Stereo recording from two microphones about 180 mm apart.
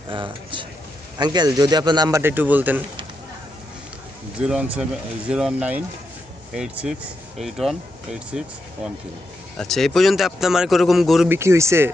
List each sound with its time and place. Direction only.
0.1 s speech: 25° right (ahead or behind); by 2.8 s 10° right (ahead or behind)
4.4 s speech: 5° right (ahead or behind)
11.3 s speech: 15° right (ahead or behind)